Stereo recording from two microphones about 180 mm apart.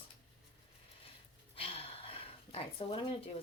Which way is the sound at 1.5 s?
30° left (ahead or behind).